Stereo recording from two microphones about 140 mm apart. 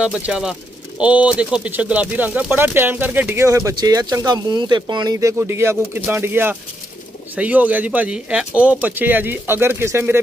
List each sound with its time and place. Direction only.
0.0 s speech: 5° right (ahead or behind); by 5.3 s 30° right (ahead or behind)
5.4 s speech: 20° right (ahead or behind)